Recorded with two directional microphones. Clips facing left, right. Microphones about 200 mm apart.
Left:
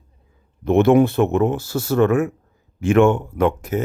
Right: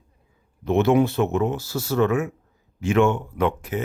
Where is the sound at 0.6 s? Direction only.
55° left (ahead or behind).